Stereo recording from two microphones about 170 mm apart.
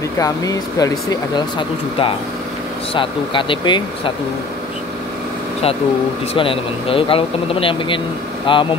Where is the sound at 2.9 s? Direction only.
30° left (ahead or behind).